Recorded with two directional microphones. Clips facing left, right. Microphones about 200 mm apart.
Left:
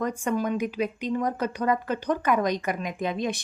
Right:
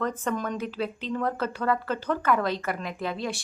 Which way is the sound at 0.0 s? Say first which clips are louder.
Left 2 dB; 10° left (ahead or behind).